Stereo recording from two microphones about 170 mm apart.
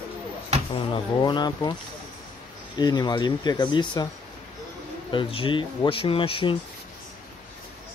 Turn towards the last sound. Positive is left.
turn(degrees=30)  # may be behind; listen again after turning